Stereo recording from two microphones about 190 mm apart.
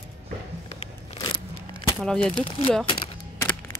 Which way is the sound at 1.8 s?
5° left (ahead or behind).